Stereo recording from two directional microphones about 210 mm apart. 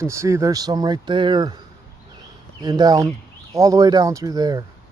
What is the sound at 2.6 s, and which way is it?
Speech, 20° right (ahead or behind).